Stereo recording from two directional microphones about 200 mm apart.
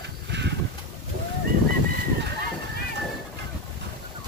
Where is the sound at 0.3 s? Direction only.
60° right (ahead or behind).